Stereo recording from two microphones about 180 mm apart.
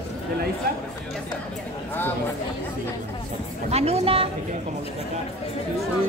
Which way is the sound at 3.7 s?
35° right (ahead or behind).